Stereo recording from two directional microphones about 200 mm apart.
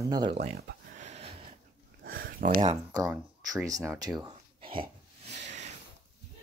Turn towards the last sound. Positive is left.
turn(degrees=-35)  # may be behind; listen again after turning